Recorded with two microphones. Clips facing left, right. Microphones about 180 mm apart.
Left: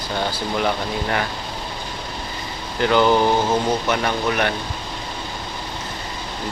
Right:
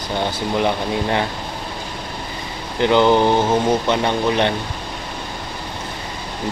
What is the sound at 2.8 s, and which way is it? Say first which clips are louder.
Speech: right 2 dB; 20° right (ahead or behind).